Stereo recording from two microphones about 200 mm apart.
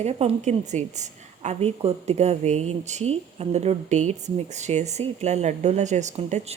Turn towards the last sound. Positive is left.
turn(degrees=-35)  # may be behind; listen again after turning